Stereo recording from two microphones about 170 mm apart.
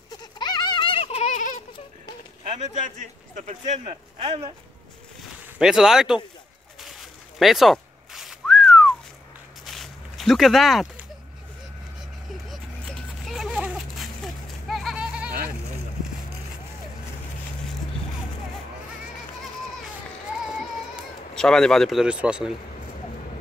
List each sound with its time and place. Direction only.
0.1 s baby laughter: 25° left (ahead or behind)
2.4 s speech: 45° right (ahead or behind)
5.6 s speech: 5° right (ahead or behind)
6.8 s whistling: centre (ahead or behind)
9.7 s a sound: centre (ahead or behind)
12.4 s goat: centre (ahead or behind)
20.9 s speech: 5° left (ahead or behind)